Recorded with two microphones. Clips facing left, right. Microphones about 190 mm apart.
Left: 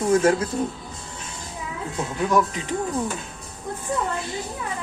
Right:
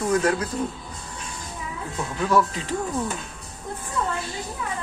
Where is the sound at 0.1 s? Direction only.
25° left (ahead or behind).